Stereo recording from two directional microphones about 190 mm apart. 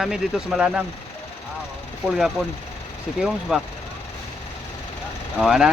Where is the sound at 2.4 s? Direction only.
5° right (ahead or behind).